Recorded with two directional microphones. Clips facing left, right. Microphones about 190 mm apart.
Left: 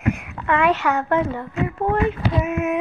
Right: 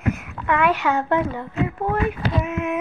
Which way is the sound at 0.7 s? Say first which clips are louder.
Even; 20° right (ahead or behind).